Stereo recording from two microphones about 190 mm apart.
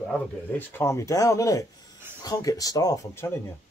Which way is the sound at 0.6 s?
15° left (ahead or behind).